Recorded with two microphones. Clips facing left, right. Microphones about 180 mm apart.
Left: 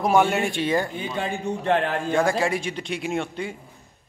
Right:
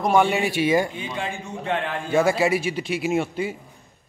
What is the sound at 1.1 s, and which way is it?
Speech, 40° left (ahead or behind).